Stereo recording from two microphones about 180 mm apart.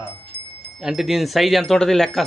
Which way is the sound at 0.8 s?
Centre (ahead or behind).